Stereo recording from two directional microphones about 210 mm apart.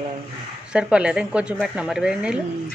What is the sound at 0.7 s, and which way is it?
A woman's voice, 5° right (ahead or behind).